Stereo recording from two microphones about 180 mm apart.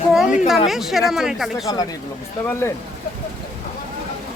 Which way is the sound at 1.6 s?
20° left (ahead or behind).